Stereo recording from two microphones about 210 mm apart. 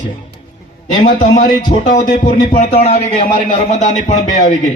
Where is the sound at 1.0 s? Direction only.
40° left (ahead or behind).